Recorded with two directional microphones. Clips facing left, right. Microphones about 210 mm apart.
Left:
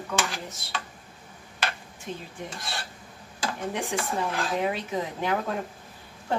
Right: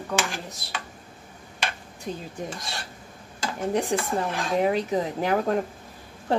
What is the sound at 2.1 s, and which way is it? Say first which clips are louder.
Speech: right 3 dB; 40° right (ahead or behind).